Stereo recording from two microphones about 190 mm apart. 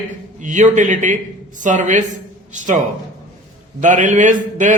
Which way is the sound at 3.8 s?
40° right (ahead or behind).